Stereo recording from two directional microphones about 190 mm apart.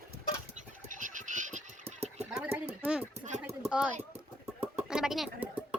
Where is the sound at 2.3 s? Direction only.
10° right (ahead or behind).